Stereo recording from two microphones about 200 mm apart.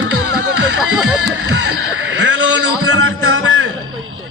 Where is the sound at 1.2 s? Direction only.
80° right.